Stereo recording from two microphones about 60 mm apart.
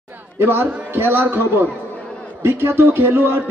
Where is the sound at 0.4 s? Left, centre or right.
Right.